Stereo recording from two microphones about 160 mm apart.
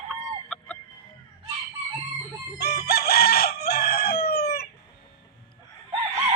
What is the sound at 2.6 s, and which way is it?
Chicken, 90° left.